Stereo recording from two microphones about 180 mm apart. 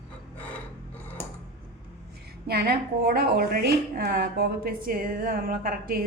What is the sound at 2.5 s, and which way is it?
A woman's voice, 60° right (ahead or behind).